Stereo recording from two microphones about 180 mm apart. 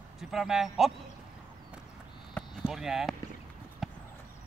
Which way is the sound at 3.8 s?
Centre (ahead or behind).